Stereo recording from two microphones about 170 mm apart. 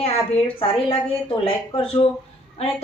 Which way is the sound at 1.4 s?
30° left (ahead or behind).